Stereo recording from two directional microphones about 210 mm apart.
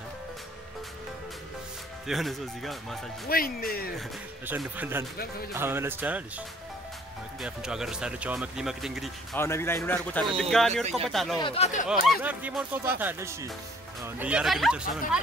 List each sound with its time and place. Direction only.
2.0 s speech: centre (ahead or behind)
3.3 s speech: 45° left (ahead or behind)
4.5 s speech: 10° right (ahead or behind)
9.4 s a man's voice: 10° left (ahead or behind)
11.3 s speech: 25° left (ahead or behind)
11.9 s speech: 5° right (ahead or behind)